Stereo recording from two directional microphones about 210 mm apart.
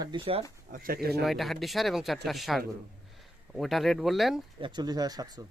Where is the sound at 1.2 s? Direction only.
Centre (ahead or behind).